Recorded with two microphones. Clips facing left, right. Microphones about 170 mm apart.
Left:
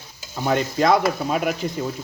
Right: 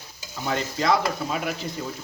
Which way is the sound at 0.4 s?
55° left (ahead or behind).